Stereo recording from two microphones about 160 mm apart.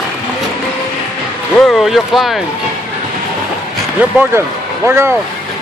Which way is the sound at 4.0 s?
10° right (ahead or behind).